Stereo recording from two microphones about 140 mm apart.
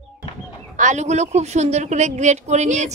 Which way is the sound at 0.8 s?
60° right (ahead or behind).